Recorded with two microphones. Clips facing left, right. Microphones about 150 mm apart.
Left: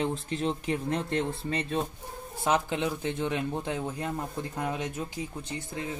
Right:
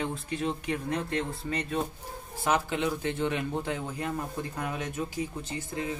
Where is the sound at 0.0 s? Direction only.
25° left (ahead or behind).